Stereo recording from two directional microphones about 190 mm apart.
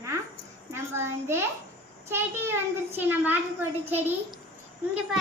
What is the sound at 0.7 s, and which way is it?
Speech, 15° right (ahead or behind).